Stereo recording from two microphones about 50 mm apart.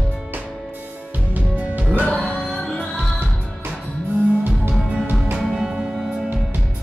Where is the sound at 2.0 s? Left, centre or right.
Centre.